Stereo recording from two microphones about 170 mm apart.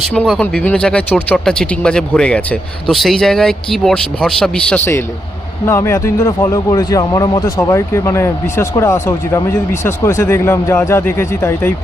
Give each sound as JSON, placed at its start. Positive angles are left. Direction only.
{"t": 0.0, "sound": "speech", "side_deg": 0}